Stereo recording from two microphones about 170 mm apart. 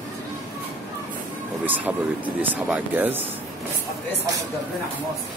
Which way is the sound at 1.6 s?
10° right (ahead or behind).